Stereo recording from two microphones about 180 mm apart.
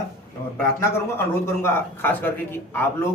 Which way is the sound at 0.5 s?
15° left (ahead or behind).